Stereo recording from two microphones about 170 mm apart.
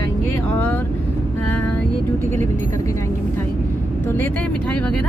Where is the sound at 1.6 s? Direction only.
5° left (ahead or behind).